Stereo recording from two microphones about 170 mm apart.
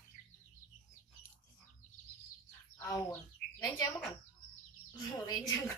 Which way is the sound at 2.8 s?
15° left (ahead or behind).